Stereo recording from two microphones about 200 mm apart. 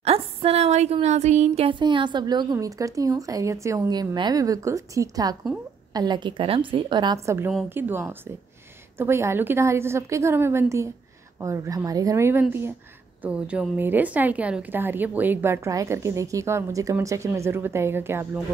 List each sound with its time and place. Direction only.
0.0 s a woman's voice: 30° right (ahead or behind); by 18.4 s 10° right (ahead or behind)